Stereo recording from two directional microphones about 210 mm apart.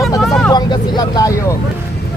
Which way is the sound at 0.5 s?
20° left (ahead or behind).